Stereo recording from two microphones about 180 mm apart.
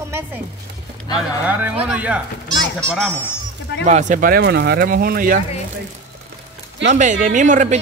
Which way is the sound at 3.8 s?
40° right (ahead or behind).